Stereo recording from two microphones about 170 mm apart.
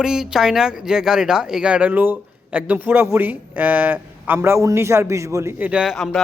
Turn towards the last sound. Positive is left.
turn(degrees=0)  # may be behind; listen again after turning